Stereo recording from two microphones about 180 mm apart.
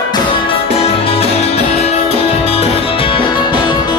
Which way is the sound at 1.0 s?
35° left (ahead or behind).